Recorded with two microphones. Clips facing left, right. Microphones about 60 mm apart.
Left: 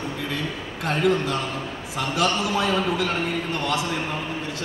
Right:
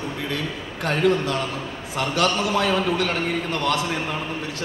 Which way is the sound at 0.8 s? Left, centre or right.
Right.